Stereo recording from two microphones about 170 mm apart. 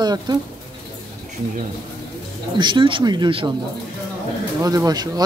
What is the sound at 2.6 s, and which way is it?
Speech, 30° right (ahead or behind).